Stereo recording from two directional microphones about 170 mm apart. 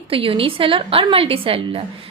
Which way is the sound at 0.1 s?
35° right (ahead or behind).